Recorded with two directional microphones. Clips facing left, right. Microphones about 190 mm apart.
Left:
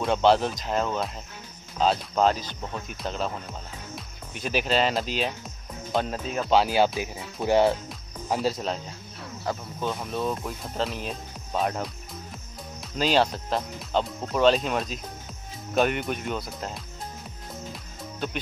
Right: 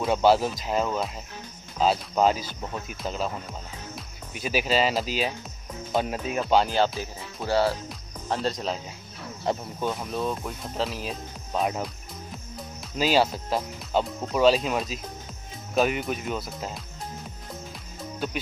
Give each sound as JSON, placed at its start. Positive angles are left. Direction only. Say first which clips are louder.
{"t": 0.0, "sound": "speech", "louder": "even", "side_deg": -5}
{"t": 7.4, "sound": "speech", "louder": "left 3 dB", "side_deg": 20}
{"t": 8.3, "sound": "speech", "louder": "left 1 dB", "side_deg": 5}
{"t": 9.5, "sound": "speech", "louder": "right 3 dB", "side_deg": -25}
{"t": 9.8, "sound": "speech", "louder": "right 1 dB", "side_deg": -5}
{"t": 12.9, "sound": "speech", "louder": "even", "side_deg": -5}